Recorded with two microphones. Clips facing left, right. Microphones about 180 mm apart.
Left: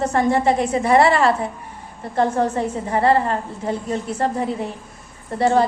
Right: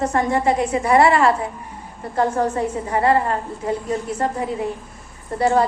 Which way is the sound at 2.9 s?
30° left (ahead or behind).